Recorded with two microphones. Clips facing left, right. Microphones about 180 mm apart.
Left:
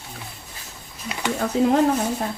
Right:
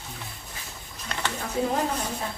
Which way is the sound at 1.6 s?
80° left.